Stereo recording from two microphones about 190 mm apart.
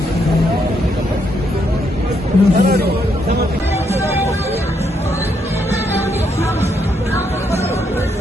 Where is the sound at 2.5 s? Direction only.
55° right (ahead or behind).